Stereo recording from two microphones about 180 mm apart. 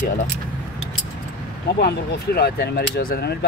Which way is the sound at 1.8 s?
65° left (ahead or behind).